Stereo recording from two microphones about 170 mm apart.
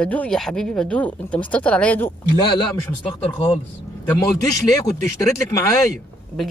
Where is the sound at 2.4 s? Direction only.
30° left (ahead or behind).